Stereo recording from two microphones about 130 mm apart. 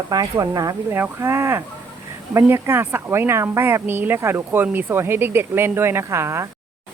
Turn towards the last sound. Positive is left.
turn(degrees=-20)  # may be behind; listen again after turning